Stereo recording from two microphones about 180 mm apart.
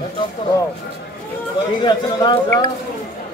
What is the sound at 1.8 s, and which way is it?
Speech, 25° left (ahead or behind).